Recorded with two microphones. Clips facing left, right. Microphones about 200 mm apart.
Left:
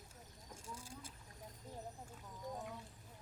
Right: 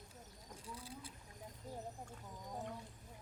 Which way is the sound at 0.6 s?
45° left (ahead or behind).